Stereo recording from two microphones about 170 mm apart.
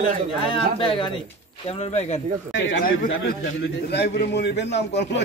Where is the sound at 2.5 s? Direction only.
90° left.